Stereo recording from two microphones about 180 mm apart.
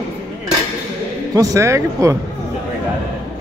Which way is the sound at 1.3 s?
20° right (ahead or behind).